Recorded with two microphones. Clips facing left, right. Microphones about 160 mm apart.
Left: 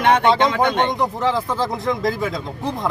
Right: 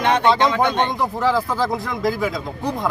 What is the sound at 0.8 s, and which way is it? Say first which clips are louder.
Speech: even; 20° left (ahead or behind).